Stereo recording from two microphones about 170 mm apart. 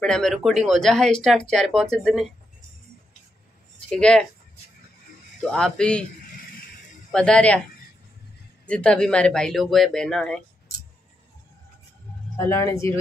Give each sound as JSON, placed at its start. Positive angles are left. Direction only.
{"t": 0.0, "sound": "speech", "side_deg": 5}
{"t": 3.9, "sound": "speech", "side_deg": 5}
{"t": 5.4, "sound": "speech", "side_deg": 5}
{"t": 7.1, "sound": "speech", "side_deg": 5}
{"t": 8.6, "sound": "speech", "side_deg": 5}
{"t": 12.4, "sound": "speech", "side_deg": 15}